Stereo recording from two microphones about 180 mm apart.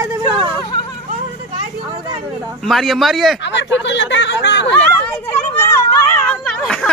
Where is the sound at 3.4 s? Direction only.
80° left.